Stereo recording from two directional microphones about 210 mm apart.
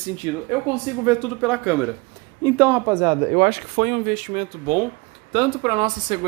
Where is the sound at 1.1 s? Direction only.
5° right (ahead or behind); by 3.3 s 20° right (ahead or behind).